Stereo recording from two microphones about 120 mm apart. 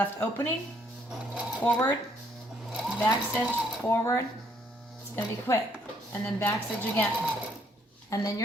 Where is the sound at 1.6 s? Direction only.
15° left (ahead or behind).